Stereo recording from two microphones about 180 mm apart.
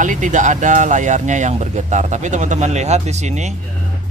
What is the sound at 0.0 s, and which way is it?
Speech, 45° right (ahead or behind).